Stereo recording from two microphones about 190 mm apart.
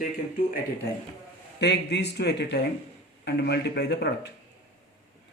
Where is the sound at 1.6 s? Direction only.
65° left (ahead or behind).